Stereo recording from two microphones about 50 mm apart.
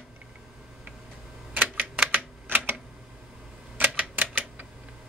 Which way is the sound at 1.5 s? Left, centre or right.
Right.